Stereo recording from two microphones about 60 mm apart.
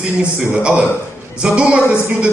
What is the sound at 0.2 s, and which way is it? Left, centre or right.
A man's voice, centre.